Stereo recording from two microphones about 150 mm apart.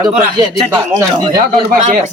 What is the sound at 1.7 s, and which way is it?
Speech, 60° right (ahead or behind).